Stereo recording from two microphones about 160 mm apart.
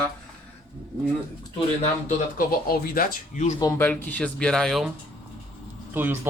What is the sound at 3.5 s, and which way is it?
Speech, 25° left (ahead or behind).